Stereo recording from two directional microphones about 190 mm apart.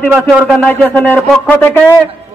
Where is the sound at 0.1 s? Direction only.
Centre (ahead or behind).